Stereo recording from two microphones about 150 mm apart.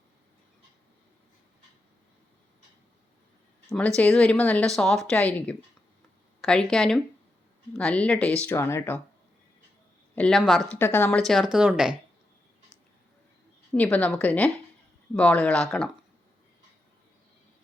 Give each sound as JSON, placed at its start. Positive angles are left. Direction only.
{"t": 3.7, "sound": "speech", "side_deg": 5}
{"t": 10.2, "sound": "speech", "side_deg": 5}
{"t": 10.7, "sound": "speech", "side_deg": 15}
{"t": 11.2, "sound": "speech", "side_deg": 0}
{"t": 13.7, "sound": "speech", "side_deg": 10}